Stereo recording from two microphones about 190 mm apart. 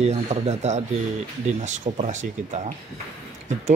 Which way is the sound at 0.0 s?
35° right (ahead or behind).